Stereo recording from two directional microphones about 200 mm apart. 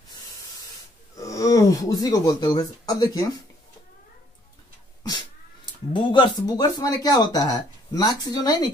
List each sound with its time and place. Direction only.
1.1 s speech: 15° left (ahead or behind)
5.9 s speech: 20° left (ahead or behind)